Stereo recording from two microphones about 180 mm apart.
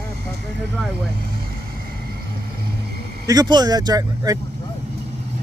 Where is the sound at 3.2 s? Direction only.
20° right (ahead or behind).